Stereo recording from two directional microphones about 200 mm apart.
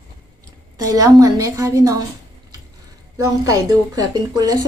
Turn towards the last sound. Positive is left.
turn(degrees=-20)  # may be behind; listen again after turning